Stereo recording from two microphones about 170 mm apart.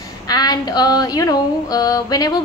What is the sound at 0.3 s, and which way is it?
Female singing, 25° left (ahead or behind).